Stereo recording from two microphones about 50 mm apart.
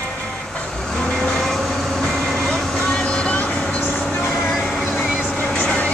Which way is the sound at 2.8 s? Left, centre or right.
Centre.